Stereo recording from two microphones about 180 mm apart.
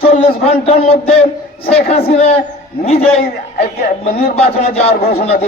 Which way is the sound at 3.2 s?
55° left (ahead or behind).